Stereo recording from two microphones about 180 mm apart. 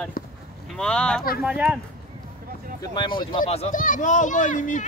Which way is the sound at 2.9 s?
25° left (ahead or behind).